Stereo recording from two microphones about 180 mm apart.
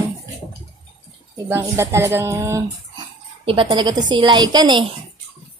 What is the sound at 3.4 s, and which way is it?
Speech, 30° right (ahead or behind).